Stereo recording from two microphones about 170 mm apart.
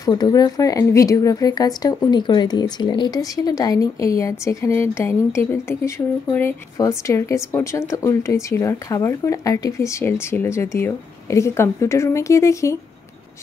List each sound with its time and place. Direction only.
0.0 s a woman's voice: 25° left (ahead or behind)